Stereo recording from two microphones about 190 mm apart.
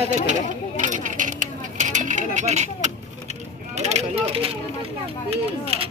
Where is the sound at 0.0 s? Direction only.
40° right (ahead or behind).